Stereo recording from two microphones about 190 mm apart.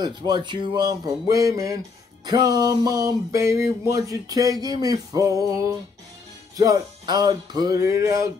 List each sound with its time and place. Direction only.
0.0 s music: 25° right (ahead or behind)